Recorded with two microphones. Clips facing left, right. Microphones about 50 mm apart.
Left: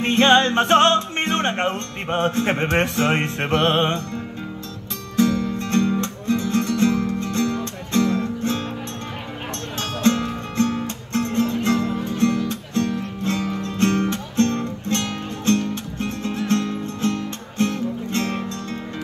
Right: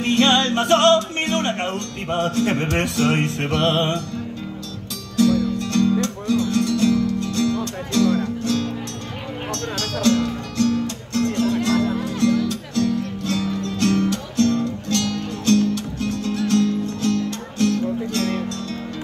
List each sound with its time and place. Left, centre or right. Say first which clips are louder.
0.0 s music: left 2 dB; left